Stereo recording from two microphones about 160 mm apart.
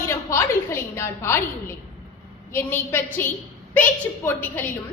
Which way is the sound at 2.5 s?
15° left (ahead or behind).